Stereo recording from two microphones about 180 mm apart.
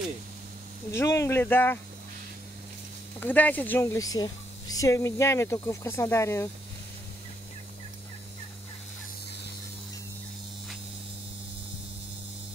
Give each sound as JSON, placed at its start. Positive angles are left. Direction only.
{"t": 0.9, "sound": "speech", "side_deg": 15}
{"t": 3.2, "sound": "speech", "side_deg": 10}